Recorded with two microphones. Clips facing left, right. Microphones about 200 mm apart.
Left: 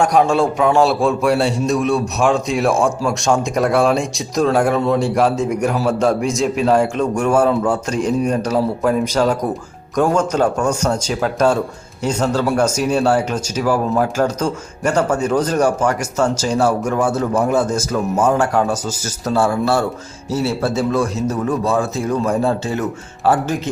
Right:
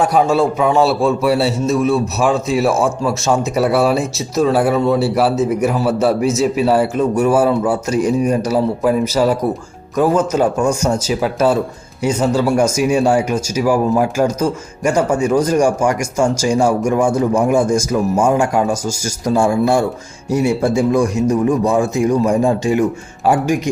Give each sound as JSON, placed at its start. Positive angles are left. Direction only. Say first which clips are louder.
{"t": 0.0, "sound": "speech", "louder": "right 1 dB", "side_deg": -5}